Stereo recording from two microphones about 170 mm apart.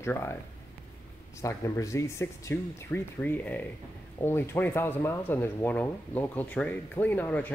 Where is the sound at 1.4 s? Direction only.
20° left (ahead or behind).